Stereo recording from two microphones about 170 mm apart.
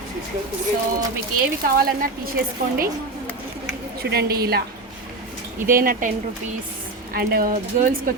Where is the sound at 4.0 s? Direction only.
70° right (ahead or behind).